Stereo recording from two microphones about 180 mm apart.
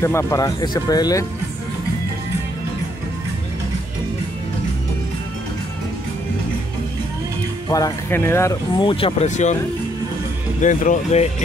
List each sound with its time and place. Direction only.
0.0 s speech: 15° left (ahead or behind)
7.7 s speech: 15° left (ahead or behind)
8.8 s speech: 30° left (ahead or behind)
10.6 s speech: 45° left (ahead or behind)